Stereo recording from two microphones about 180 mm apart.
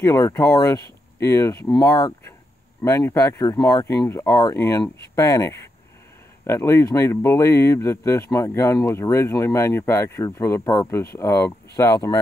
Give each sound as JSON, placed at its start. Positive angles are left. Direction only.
{"t": 0.0, "sound": "speech", "side_deg": 15}